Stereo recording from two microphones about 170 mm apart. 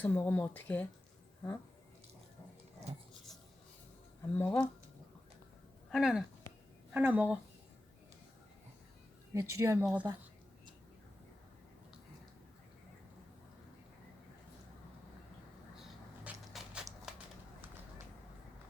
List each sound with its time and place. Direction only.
0.0 s speech: 10° left (ahead or behind)
4.4 s speech: 5° left (ahead or behind)
5.9 s speech: 5° right (ahead or behind)
9.3 s speech: 15° right (ahead or behind)
16.2 s a sound: 5° right (ahead or behind)